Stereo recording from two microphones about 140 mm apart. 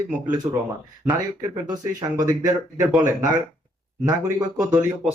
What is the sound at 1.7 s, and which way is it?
Speech, 30° right (ahead or behind).